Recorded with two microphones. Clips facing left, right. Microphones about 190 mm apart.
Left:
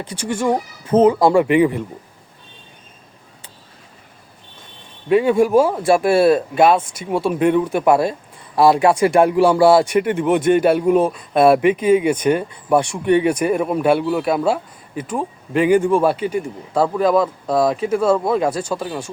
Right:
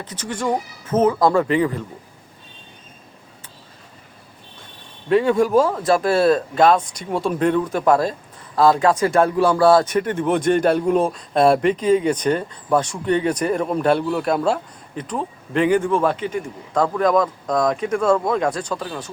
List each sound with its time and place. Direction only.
0.0 s speech: 10° left (ahead or behind)
5.0 s speech: 10° left (ahead or behind)